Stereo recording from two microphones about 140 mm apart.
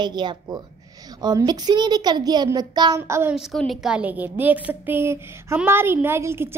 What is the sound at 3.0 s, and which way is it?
Speech, 20° right (ahead or behind).